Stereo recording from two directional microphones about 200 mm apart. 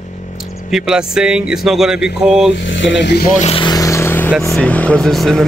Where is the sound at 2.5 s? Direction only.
70° left (ahead or behind).